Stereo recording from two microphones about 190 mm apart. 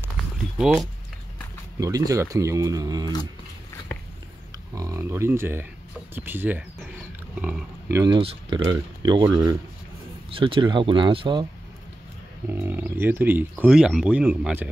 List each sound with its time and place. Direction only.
1.8 s speech: 20° right (ahead or behind)
4.7 s speech: 15° right (ahead or behind)
8.0 s speech: 25° right (ahead or behind)
12.4 s speech: 10° right (ahead or behind)